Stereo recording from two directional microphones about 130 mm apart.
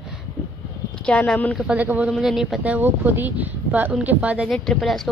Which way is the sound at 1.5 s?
10° right (ahead or behind).